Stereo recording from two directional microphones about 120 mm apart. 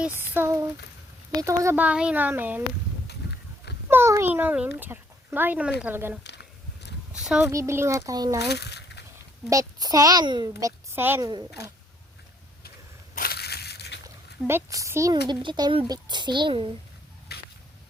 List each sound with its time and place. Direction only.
0.0 s a child's voice: 15° right (ahead or behind)
1.7 s a child's voice: 10° right (ahead or behind)
3.8 s a child's voice: 20° right (ahead or behind)
7.1 s a sound: 5° right (ahead or behind)
7.5 s a child's voice: 25° right (ahead or behind)
9.5 s a child's voice: 30° right (ahead or behind)
11.2 s a child's voice: 35° right (ahead or behind)
14.4 s a child's voice: 25° right (ahead or behind)
15.1 s a child's voice: 40° right (ahead or behind)